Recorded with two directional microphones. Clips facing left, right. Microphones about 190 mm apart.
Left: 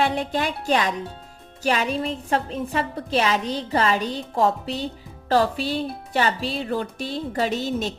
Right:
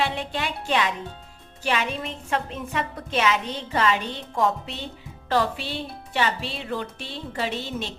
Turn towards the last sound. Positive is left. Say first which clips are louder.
# left 5 dB
turn(degrees=40)  # may be behind; listen again after turning